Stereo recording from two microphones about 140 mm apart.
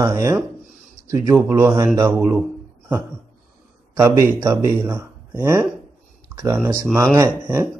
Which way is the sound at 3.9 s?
20° right (ahead or behind).